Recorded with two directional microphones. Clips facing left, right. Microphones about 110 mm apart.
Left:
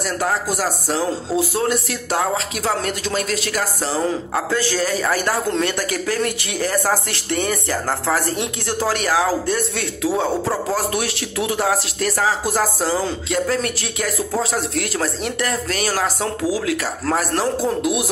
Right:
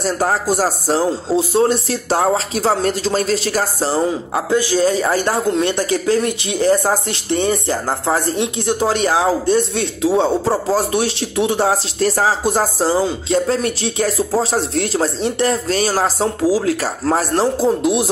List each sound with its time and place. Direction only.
0.0 s speech: 35° right (ahead or behind)
4.5 s speech: 15° right (ahead or behind)